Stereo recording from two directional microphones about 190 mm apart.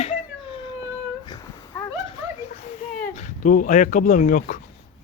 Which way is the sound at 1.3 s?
15° left (ahead or behind).